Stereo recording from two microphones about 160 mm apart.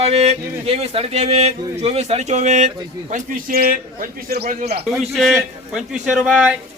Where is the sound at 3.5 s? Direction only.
65° right (ahead or behind).